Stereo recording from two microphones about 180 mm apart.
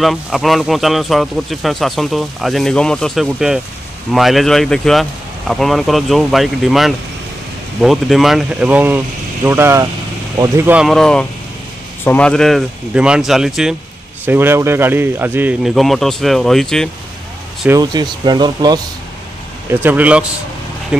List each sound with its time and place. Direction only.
0.0 s speech: centre (ahead or behind)
17.6 s speech: 20° right (ahead or behind)
19.7 s speech: 10° right (ahead or behind)